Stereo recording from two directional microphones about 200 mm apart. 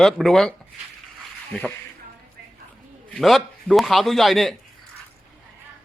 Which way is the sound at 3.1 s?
Centre (ahead or behind).